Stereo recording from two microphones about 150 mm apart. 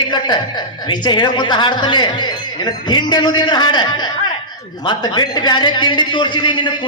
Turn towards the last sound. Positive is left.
turn(degrees=30)  # may be behind; listen again after turning